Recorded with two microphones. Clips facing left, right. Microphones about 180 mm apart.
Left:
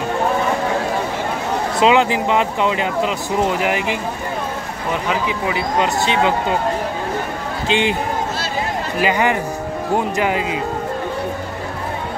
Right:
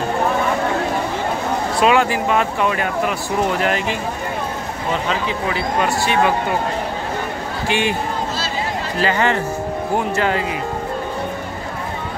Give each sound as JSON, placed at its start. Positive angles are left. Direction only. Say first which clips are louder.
{"t": 1.8, "sound": "speech", "louder": "left 1 dB", "side_deg": 20}
{"t": 5.5, "sound": "speech", "louder": "left 1 dB", "side_deg": 20}
{"t": 7.6, "sound": "speech", "louder": "left 2 dB", "side_deg": 20}